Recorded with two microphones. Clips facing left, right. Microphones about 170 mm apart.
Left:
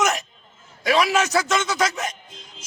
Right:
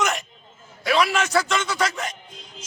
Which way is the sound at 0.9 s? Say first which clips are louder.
Left 2 dB; 20° left (ahead or behind).